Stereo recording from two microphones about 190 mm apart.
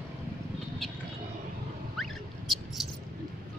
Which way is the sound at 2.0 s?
Centre (ahead or behind).